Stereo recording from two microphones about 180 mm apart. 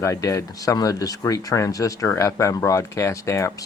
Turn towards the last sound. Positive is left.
turn(degrees=15)  # may be behind; listen again after turning